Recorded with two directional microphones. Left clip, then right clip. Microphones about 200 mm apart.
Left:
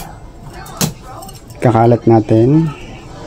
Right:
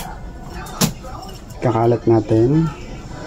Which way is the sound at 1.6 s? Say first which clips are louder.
Left 6 dB; 60° left (ahead or behind).